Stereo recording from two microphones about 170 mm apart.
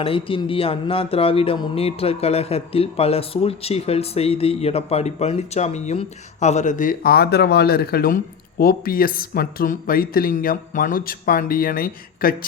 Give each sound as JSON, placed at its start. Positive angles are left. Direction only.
{"t": 0.0, "sound": "speech", "side_deg": 30}